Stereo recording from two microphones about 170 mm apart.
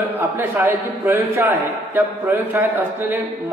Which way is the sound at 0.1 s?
15° right (ahead or behind).